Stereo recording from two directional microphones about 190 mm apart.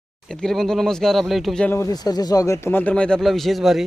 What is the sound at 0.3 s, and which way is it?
Speech, centre (ahead or behind).